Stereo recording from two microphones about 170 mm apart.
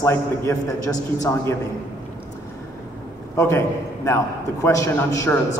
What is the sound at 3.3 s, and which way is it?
A man's voice, 15° left (ahead or behind).